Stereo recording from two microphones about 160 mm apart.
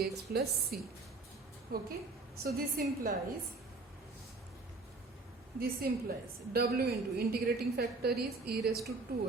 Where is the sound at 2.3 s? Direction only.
70° right (ahead or behind).